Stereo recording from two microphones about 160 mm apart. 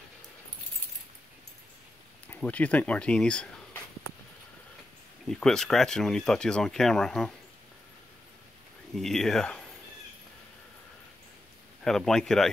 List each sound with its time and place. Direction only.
2.2 s speech: 10° left (ahead or behind)
5.2 s speech: 5° left (ahead or behind)
8.9 s speech: centre (ahead or behind)
11.8 s speech: 5° left (ahead or behind)